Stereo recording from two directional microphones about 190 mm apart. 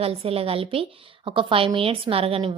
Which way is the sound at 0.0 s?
30° right (ahead or behind).